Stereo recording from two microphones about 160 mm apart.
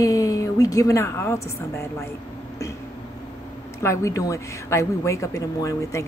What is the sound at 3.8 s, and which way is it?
A woman's voice, 20° left (ahead or behind).